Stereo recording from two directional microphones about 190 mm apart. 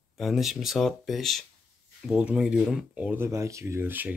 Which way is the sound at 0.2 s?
Centre (ahead or behind).